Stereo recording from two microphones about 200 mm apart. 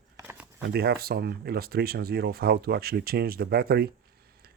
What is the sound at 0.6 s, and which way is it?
Speech, 50° right (ahead or behind).